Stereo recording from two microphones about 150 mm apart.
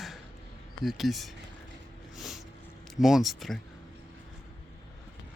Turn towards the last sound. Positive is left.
turn(degrees=0)  # may be behind; listen again after turning